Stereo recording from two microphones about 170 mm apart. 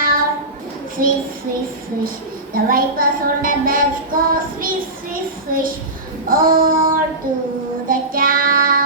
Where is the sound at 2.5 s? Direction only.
55° right (ahead or behind).